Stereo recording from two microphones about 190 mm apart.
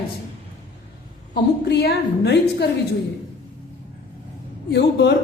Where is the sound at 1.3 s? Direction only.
60° left (ahead or behind).